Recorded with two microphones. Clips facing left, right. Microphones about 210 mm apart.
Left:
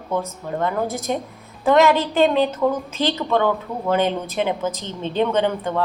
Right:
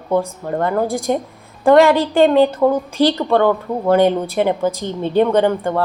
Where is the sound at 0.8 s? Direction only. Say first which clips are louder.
Right 5 dB; 10° right (ahead or behind).